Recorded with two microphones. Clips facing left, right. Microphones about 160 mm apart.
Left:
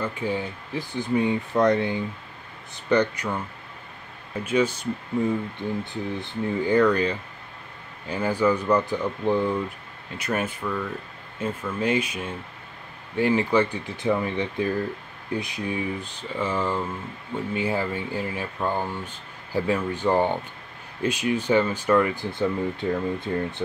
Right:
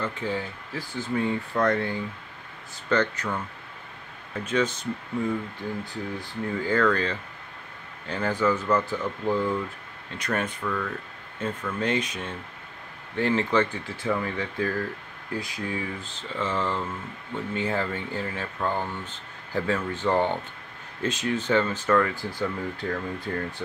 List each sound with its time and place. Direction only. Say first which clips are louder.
0.0 s speech: left 2 dB; 10° left (ahead or behind)
6.2 s speech: left 4 dB; 20° left (ahead or behind)
10.1 s speech: left 2 dB; 5° left (ahead or behind)